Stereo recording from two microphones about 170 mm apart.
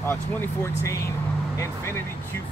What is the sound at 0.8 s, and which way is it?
Speech, 20° left (ahead or behind).